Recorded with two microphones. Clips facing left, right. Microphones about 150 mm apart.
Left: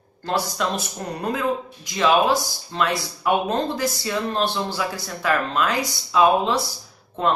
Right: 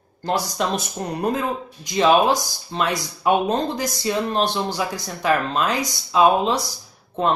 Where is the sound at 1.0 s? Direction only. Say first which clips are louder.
Right 1 dB; 25° right (ahead or behind).